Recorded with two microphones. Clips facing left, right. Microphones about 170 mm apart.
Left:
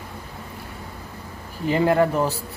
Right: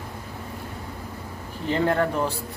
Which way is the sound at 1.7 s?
5° left (ahead or behind).